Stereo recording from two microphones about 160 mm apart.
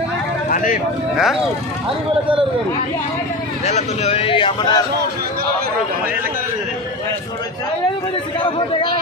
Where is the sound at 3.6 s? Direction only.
45° left (ahead or behind).